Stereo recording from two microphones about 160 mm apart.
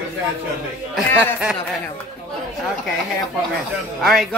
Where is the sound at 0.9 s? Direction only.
Centre (ahead or behind).